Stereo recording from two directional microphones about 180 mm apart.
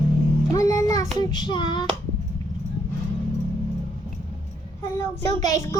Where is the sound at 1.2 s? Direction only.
25° left (ahead or behind).